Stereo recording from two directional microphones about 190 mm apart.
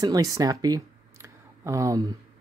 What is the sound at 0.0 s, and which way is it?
Speech, 20° right (ahead or behind).